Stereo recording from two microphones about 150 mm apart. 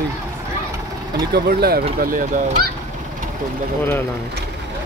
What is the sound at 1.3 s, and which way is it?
Speech, 90° right.